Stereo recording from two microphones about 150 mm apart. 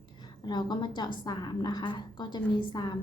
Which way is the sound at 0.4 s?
30° left (ahead or behind).